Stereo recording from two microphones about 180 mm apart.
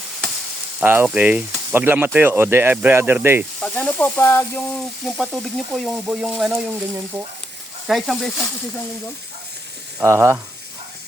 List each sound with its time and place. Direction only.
0.8 s speech: 10° right (ahead or behind)
3.6 s speech: 10° left (ahead or behind)
5.0 s frying: centre (ahead or behind)
7.9 s frying: centre (ahead or behind)
10.0 s speech: 15° right (ahead or behind)